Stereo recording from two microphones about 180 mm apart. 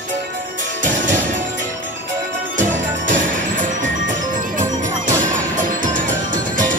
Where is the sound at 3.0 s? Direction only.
45° right (ahead or behind).